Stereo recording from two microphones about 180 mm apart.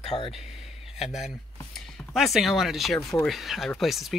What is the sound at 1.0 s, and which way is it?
Speech, centre (ahead or behind).